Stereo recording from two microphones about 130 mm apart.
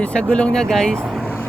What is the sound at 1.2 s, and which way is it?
Vehicle, 15° left (ahead or behind).